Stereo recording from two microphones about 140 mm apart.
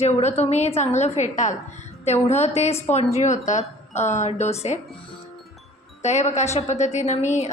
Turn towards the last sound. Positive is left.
turn(degrees=55)  # may be behind; listen again after turning